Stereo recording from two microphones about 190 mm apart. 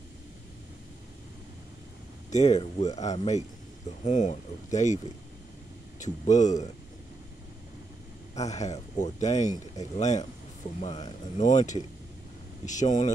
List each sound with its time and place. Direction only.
2.3 s speech: 35° left (ahead or behind)
8.4 s speech: 35° left (ahead or behind)
11.3 s speech: 40° left (ahead or behind)